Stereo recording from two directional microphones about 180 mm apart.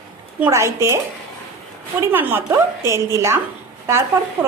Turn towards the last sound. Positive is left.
turn(degrees=-15)  # may be behind; listen again after turning